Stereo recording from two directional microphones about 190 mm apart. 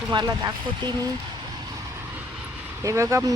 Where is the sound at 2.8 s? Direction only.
15° right (ahead or behind).